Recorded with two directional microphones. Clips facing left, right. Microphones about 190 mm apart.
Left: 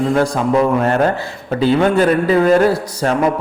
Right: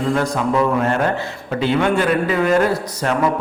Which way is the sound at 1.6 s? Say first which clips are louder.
Left 4 dB; 35° left (ahead or behind).